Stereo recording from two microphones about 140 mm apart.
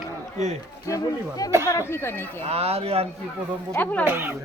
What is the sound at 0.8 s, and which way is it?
Speech, 25° left (ahead or behind).